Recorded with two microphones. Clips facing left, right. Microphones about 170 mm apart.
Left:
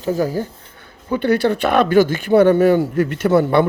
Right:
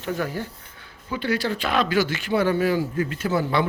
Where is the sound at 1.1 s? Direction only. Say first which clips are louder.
Left 9 dB; 60° left (ahead or behind).